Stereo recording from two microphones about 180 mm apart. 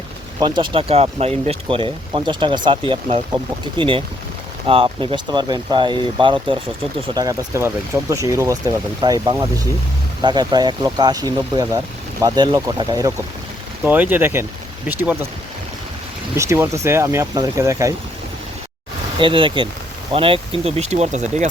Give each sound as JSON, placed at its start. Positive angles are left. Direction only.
{"t": 0.3, "sound": "speech", "side_deg": -25}
{"t": 13.8, "sound": "speech", "side_deg": -10}
{"t": 16.3, "sound": "speech", "side_deg": -15}
{"t": 19.2, "sound": "speech", "side_deg": -25}